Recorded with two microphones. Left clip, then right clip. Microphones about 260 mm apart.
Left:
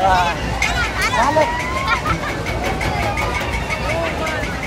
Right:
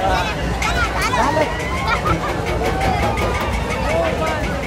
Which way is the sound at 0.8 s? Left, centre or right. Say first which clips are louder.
Even; right.